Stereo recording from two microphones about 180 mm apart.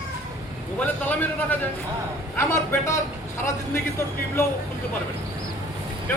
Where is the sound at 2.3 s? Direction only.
15° left (ahead or behind).